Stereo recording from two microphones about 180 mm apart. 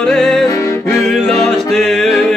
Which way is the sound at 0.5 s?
15° left (ahead or behind).